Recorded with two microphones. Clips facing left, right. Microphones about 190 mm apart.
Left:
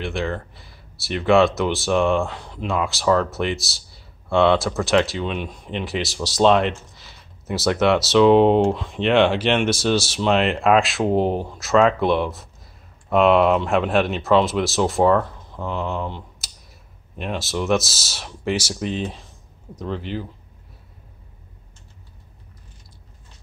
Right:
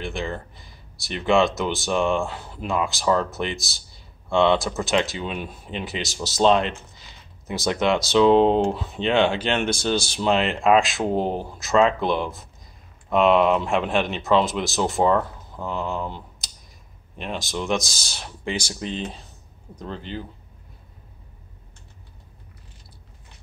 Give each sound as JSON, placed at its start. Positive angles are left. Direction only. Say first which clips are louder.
{"t": 0.0, "sound": "speech", "louder": "left 3 dB", "side_deg": 0}